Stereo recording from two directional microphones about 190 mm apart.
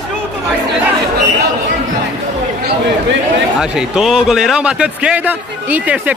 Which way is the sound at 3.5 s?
5° right (ahead or behind).